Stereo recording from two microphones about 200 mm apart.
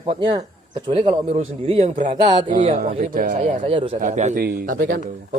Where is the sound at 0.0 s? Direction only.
25° right (ahead or behind).